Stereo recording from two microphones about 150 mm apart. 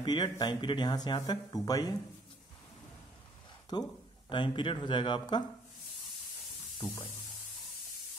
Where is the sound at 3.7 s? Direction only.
30° left (ahead or behind).